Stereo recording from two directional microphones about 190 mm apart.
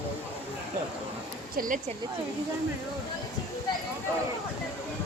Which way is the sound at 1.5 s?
45° right (ahead or behind).